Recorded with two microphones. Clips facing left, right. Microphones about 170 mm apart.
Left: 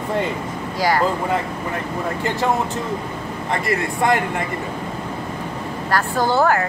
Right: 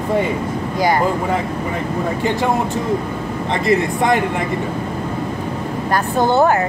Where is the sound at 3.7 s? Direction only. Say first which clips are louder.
Right 4 dB; 20° right (ahead or behind).